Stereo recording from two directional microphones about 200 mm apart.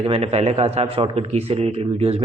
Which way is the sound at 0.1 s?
30° right (ahead or behind).